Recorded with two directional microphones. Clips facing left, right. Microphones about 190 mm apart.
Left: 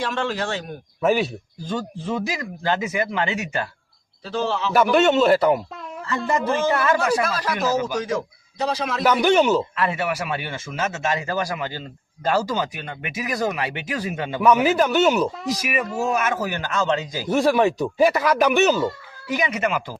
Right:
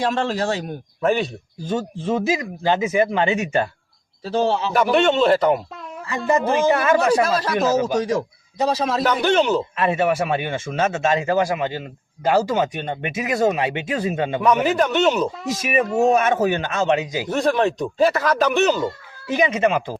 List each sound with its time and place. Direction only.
0.0 s speech: 35° right (ahead or behind)
1.0 s speech: 5° left (ahead or behind)
1.6 s a man's voice: 20° right (ahead or behind)
4.2 s speech: 40° right (ahead or behind)
4.7 s speech: centre (ahead or behind)
6.1 s speech: 15° right (ahead or behind)
7.0 s a man's voice: 30° right (ahead or behind)
9.0 s speech: 10° left (ahead or behind)
9.7 s a man's voice: 25° right (ahead or behind)
14.4 s speech: centre (ahead or behind)
16.1 s a man's voice: 30° right (ahead or behind)
17.2 s speech: 10° left (ahead or behind)
19.3 s a man's voice: 25° right (ahead or behind)